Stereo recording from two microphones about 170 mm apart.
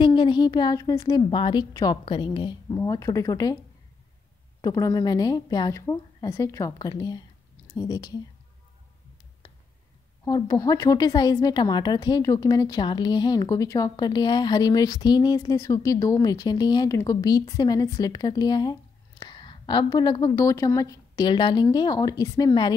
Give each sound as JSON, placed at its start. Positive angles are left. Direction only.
{"t": 0.0, "sound": "a woman's voice", "side_deg": 25}
{"t": 4.6, "sound": "a woman's voice", "side_deg": 20}
{"t": 10.2, "sound": "a woman's voice", "side_deg": 25}